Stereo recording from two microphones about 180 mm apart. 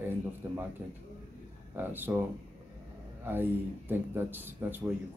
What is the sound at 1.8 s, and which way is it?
Speech, 10° right (ahead or behind).